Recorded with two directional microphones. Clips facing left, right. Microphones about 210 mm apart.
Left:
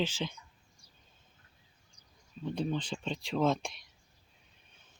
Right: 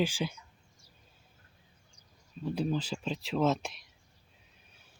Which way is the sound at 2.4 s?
5° right (ahead or behind).